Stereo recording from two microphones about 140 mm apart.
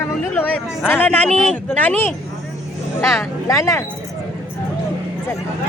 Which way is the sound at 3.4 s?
20° left (ahead or behind).